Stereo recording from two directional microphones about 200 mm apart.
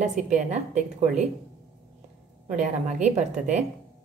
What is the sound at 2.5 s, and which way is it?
A woman's voice, 35° right (ahead or behind).